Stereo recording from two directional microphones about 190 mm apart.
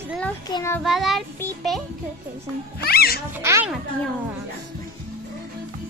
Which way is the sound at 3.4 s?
15° right (ahead or behind).